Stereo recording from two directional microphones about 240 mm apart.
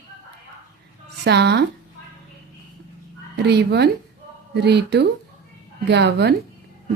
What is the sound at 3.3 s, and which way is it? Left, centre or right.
Speech, right.